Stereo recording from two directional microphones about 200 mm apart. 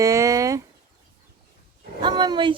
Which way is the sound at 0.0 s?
15° right (ahead or behind).